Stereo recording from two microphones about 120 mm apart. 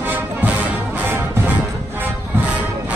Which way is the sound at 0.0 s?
15° right (ahead or behind).